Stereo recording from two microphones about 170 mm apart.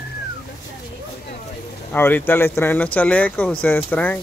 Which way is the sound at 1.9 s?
10° left (ahead or behind).